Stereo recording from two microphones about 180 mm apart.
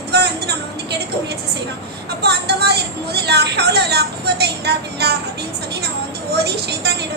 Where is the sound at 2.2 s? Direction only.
65° right (ahead or behind).